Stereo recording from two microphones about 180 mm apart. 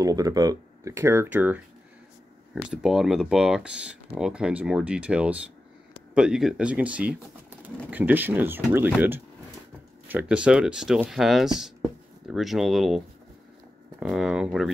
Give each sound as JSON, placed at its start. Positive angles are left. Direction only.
{"t": 0.0, "sound": "speech", "side_deg": -20}